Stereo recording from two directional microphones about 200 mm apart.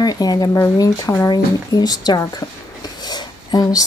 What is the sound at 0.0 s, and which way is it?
Speech, 20° left (ahead or behind).